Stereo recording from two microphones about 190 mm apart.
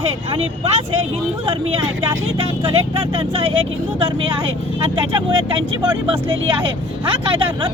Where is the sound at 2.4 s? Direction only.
30° right (ahead or behind).